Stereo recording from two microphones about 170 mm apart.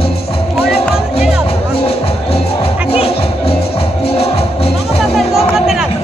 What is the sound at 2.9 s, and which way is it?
Music, 35° left (ahead or behind).